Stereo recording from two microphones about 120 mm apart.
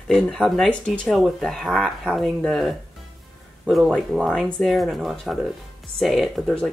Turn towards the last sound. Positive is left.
turn(degrees=0)  # may be behind; listen again after turning